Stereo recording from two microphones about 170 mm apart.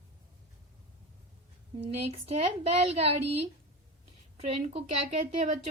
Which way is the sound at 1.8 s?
35° right (ahead or behind).